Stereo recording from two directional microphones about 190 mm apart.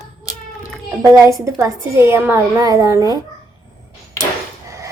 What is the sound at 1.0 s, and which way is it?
A woman's voice, 15° right (ahead or behind).